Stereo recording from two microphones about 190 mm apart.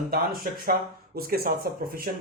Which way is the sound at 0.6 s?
50° right (ahead or behind).